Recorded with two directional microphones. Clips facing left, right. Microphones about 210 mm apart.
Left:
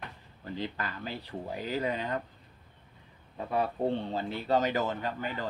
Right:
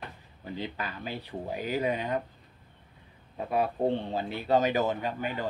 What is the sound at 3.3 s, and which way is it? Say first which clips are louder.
Speech: right 2 dB; 15° right (ahead or behind).